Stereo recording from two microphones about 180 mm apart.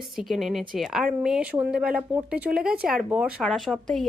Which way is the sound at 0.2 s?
Centre (ahead or behind).